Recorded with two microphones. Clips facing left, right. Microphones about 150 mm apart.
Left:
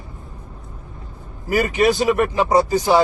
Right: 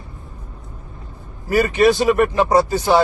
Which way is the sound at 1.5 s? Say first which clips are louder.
Right 2 dB; 15° left (ahead or behind).